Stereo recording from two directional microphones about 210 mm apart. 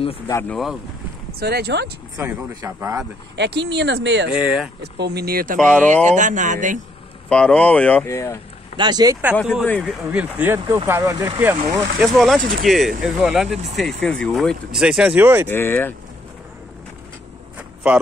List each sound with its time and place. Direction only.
0.3 s speech: 10° left (ahead or behind)
1.4 s speech: 50° right (ahead or behind)
2.1 s speech: 15° right (ahead or behind)
3.3 s speech: 55° right (ahead or behind)
4.3 s speech: 5° right (ahead or behind)
4.9 s speech: 50° right (ahead or behind)
5.6 s speech: 5° left (ahead or behind)
6.0 s speech: 35° right (ahead or behind)
7.2 s speech: 5° left (ahead or behind)
8.7 s speech: 20° right (ahead or behind)
12.0 s speech: centre (ahead or behind)
15.4 s speech: 10° left (ahead or behind)